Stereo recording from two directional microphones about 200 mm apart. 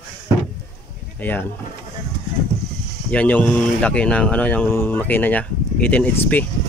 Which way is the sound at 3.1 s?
5° left (ahead or behind).